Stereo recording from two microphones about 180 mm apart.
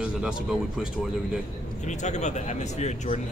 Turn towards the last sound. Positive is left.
turn(degrees=40)  # may be behind; listen again after turning